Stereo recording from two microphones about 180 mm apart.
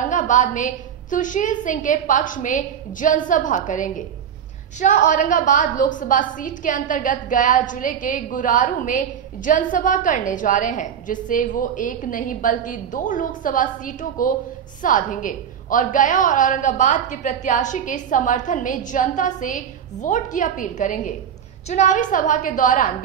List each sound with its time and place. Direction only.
0.1 s a woman's voice: 45° left (ahead or behind)